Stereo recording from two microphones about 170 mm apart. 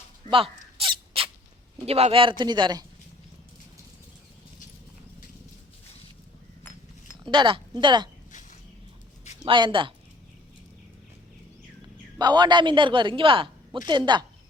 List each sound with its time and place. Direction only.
0.8 s a sound: 35° right (ahead or behind)
1.9 s a man's voice: 35° right (ahead or behind)
7.3 s a woman's voice: 30° right (ahead or behind)
8.3 s a sound: 50° left (ahead or behind)
9.4 s a woman's voice: 25° right (ahead or behind)
12.2 s a woman's voice: 25° right (ahead or behind)